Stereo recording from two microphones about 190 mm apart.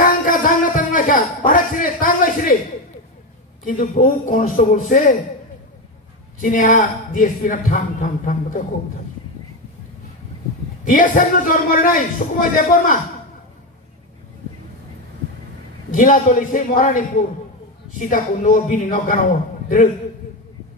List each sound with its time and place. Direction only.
0.0 s a sound: 45° left (ahead or behind)
3.6 s a man's voice: 45° left (ahead or behind)
6.4 s a man's voice: 45° left (ahead or behind)
10.9 s a man's voice: 45° left (ahead or behind)
15.9 s a man's voice: 45° left (ahead or behind)